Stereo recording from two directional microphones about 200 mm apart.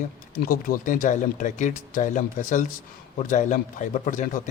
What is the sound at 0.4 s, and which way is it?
A man's voice, 45° left (ahead or behind).